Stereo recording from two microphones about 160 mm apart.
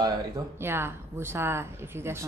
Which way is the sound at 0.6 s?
15° right (ahead or behind).